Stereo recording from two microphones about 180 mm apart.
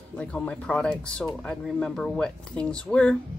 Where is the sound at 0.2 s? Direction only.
5° left (ahead or behind).